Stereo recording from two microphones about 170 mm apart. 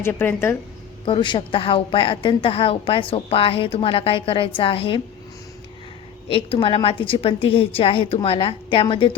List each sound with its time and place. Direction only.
0.0 s speech: 10° left (ahead or behind)
1.0 s a woman's voice: 30° left (ahead or behind)
6.3 s a woman's voice: 30° left (ahead or behind)